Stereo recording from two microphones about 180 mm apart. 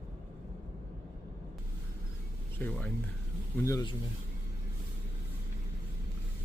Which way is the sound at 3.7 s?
20° left (ahead or behind).